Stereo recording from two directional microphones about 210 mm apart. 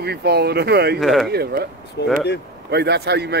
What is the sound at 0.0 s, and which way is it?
Speech, 50° right (ahead or behind).